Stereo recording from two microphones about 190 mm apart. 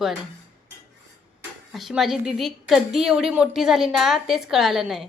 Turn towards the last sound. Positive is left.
turn(degrees=0)  # may be behind; listen again after turning